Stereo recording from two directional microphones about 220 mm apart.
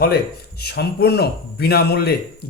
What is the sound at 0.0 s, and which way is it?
Speech, 45° left (ahead or behind).